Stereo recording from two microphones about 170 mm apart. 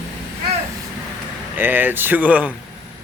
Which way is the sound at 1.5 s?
10° right (ahead or behind).